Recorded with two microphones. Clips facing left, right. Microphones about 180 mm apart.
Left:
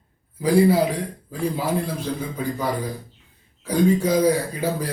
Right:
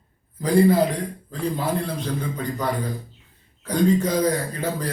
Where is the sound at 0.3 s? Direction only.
10° left (ahead or behind).